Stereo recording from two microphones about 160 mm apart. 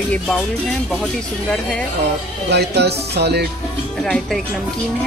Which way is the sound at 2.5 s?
90° right.